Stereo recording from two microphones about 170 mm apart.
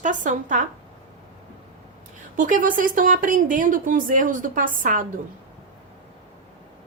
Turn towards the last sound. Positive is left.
turn(degrees=-50)  # may be behind; listen again after turning